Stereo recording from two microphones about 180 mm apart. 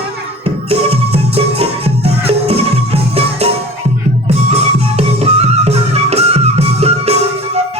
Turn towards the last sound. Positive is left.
turn(degrees=-35)  # may be behind; listen again after turning